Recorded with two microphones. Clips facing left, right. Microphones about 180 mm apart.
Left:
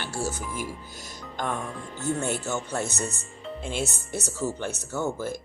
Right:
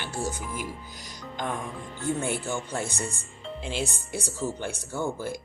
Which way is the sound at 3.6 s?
50° left (ahead or behind).